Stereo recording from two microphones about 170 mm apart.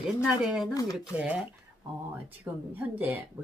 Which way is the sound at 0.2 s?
5° right (ahead or behind).